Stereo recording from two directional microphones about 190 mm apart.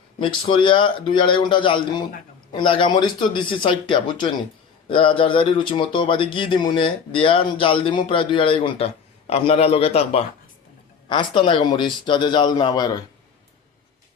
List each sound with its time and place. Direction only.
0.2 s speech: 25° left (ahead or behind)